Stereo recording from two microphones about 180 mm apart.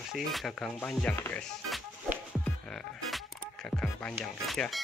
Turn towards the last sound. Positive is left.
turn(degrees=0)  # may be behind; listen again after turning